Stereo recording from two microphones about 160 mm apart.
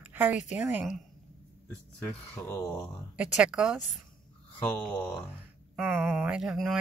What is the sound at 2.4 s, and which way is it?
Speech, 15° left (ahead or behind).